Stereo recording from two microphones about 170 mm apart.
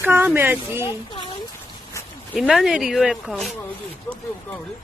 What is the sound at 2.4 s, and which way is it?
Speech, centre (ahead or behind).